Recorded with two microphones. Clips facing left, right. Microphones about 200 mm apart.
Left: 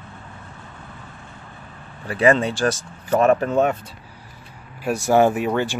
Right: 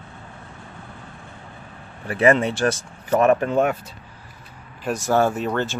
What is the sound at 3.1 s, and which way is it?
Speech, 25° left (ahead or behind).